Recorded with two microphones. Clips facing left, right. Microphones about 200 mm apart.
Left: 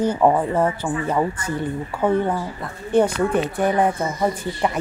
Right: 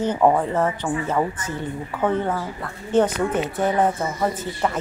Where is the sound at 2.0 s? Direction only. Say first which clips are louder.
Left 2 dB; 10° left (ahead or behind).